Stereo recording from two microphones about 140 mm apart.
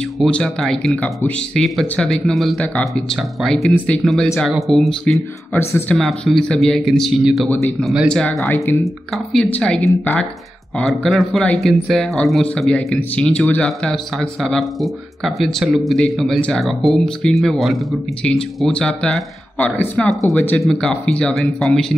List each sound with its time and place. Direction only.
0.2 s speech: 5° left (ahead or behind)
5.5 s speech: 15° left (ahead or behind)
5.9 s speech: centre (ahead or behind)